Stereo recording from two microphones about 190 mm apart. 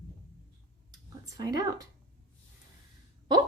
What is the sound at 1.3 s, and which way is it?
Speech, 20° right (ahead or behind).